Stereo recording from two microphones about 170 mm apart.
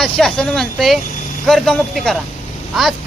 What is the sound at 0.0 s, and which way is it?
Speech, 5° left (ahead or behind).